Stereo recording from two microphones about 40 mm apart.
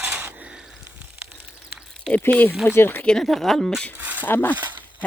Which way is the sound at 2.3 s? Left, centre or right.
Left.